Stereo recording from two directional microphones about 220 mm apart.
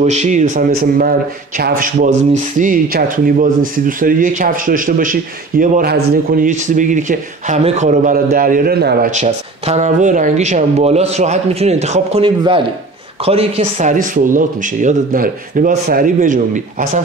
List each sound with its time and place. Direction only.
0.0 s speech: 30° right (ahead or behind)
9.1 s speech: 30° right (ahead or behind)